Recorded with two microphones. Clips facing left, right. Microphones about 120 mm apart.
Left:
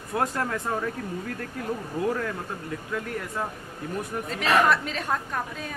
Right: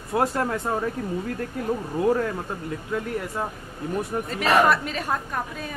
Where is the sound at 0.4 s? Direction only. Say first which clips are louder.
Right 3 dB; 25° right (ahead or behind).